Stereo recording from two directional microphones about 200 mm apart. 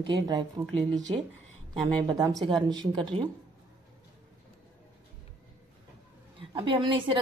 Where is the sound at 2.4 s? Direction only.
20° right (ahead or behind).